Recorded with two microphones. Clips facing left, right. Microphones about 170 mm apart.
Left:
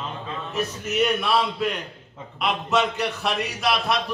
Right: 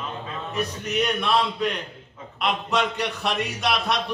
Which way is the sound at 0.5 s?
Centre (ahead or behind).